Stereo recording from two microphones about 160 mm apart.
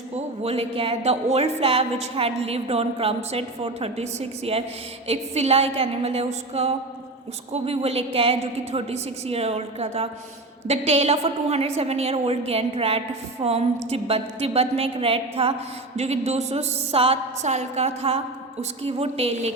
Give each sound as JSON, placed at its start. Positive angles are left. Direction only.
{"t": 0.4, "sound": "a woman's voice", "side_deg": -40}